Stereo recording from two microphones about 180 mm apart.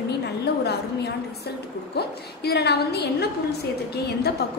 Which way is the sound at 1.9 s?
65° left (ahead or behind).